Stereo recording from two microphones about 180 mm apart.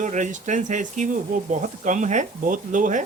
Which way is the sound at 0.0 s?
45° right (ahead or behind).